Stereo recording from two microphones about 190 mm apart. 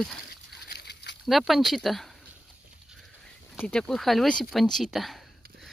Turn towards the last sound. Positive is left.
turn(degrees=0)  # may be behind; listen again after turning